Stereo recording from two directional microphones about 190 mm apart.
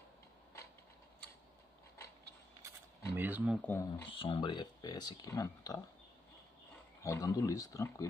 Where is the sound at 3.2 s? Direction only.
10° right (ahead or behind).